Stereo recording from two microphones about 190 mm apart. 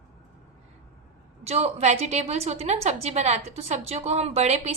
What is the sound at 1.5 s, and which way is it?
A woman's voice, 35° right (ahead or behind).